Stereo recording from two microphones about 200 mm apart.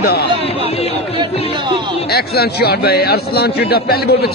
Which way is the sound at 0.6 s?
30° left (ahead or behind).